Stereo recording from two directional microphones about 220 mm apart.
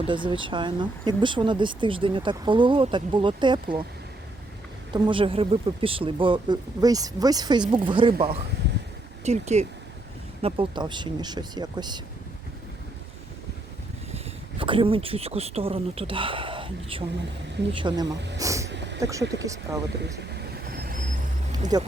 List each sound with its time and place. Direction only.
0.0 s speech: 20° right (ahead or behind)
4.9 s speech: 20° right (ahead or behind)
14.6 s speech: 25° right (ahead or behind)
18.3 s vehicle: 15° right (ahead or behind)
18.9 s speech: 15° right (ahead or behind)
20.7 s vehicle: 45° right (ahead or behind)
21.7 s speech: 20° right (ahead or behind)